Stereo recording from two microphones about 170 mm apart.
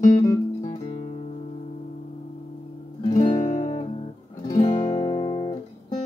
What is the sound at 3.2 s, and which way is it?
Music, 30° left (ahead or behind).